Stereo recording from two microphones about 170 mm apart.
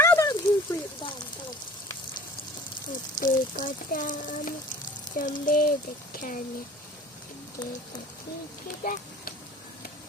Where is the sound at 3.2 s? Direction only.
50° left (ahead or behind).